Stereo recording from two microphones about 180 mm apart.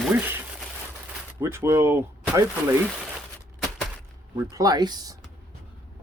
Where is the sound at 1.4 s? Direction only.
15° right (ahead or behind).